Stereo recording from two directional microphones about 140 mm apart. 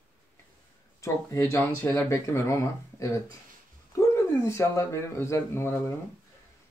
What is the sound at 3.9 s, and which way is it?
Speech, 20° left (ahead or behind).